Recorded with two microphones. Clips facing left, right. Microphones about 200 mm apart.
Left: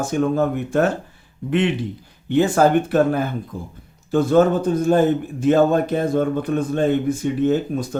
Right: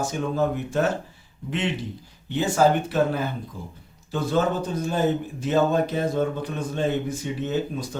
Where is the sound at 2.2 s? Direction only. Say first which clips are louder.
Left 5 dB; 55° left (ahead or behind).